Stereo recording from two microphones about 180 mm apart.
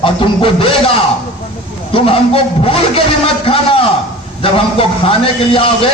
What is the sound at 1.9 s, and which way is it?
A man's voice, 30° left (ahead or behind).